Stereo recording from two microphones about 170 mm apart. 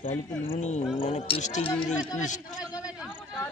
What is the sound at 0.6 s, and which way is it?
Speech, 45° left (ahead or behind).